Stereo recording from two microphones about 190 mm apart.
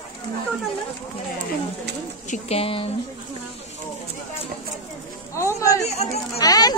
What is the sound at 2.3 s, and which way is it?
Speech, 35° left (ahead or behind).